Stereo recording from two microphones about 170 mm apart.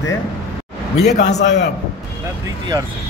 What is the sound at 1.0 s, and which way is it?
Speech, 45° left (ahead or behind).